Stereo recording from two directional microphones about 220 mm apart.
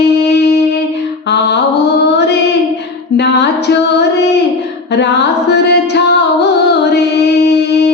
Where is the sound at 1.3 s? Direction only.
50° left (ahead or behind).